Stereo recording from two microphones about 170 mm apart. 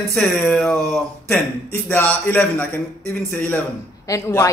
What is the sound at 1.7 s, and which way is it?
A man's voice, 15° left (ahead or behind).